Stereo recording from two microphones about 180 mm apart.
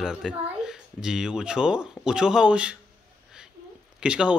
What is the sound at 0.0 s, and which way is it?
A child's voice, 5° right (ahead or behind).